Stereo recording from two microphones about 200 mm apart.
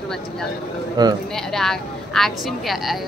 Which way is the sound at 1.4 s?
Centre (ahead or behind).